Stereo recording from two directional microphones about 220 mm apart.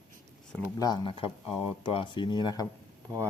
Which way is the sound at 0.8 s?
20° left (ahead or behind).